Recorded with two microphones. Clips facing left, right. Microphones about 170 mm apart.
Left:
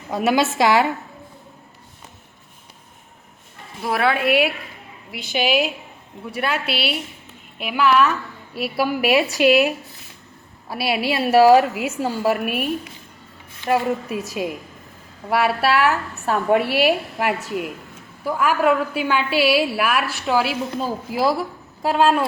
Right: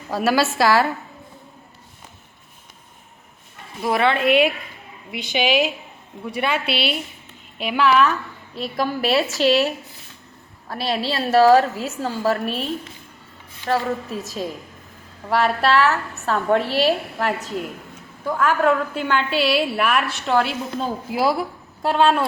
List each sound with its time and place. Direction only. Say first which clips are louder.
0.1 s a woman's voice: left 1 dB; 20° left (ahead or behind)
3.8 s a woman's voice: right 1 dB; 5° left (ahead or behind)